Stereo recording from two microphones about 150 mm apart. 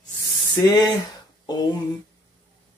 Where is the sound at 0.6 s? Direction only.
30° left (ahead or behind).